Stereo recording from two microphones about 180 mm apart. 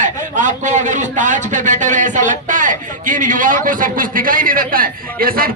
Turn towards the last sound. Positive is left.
turn(degrees=-55)  # may be behind; listen again after turning